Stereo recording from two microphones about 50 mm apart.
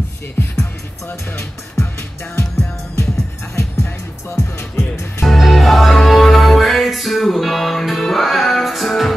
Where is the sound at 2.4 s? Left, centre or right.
Left.